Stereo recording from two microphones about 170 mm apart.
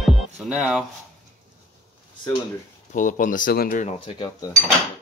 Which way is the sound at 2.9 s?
50° left (ahead or behind).